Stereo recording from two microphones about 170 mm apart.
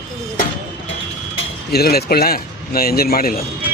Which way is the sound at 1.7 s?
65° left (ahead or behind).